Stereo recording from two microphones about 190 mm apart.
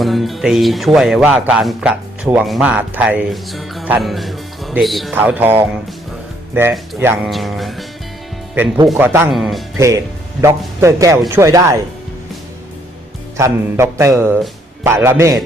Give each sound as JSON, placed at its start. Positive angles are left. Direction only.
{"t": 0.0, "sound": "speech", "side_deg": 0}
{"t": 5.1, "sound": "music", "side_deg": -10}
{"t": 7.3, "sound": "speech", "side_deg": 0}
{"t": 8.6, "sound": "music", "side_deg": -10}
{"t": 9.3, "sound": "speech", "side_deg": 0}
{"t": 9.7, "sound": "music", "side_deg": -15}
{"t": 13.3, "sound": "music", "side_deg": -15}